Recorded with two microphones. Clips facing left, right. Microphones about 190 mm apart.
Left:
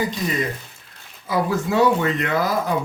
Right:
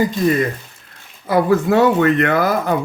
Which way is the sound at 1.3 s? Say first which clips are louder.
Right 7 dB; 60° right (ahead or behind).